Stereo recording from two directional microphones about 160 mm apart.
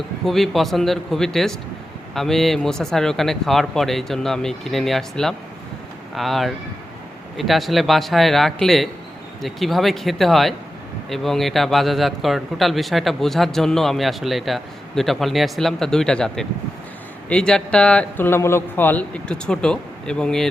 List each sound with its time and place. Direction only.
0.3 s a man's voice: centre (ahead or behind)